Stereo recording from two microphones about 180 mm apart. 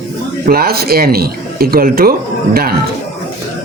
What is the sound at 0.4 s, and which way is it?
A man's voice, 55° right (ahead or behind).